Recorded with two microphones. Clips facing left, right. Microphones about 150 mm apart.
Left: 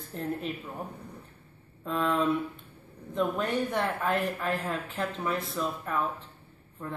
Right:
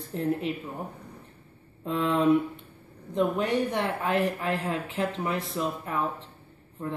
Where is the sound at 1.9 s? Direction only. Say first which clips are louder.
Right 3 dB; 20° right (ahead or behind).